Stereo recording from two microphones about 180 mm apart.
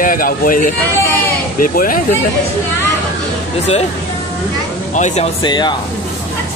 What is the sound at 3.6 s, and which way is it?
Speech, 35° left (ahead or behind).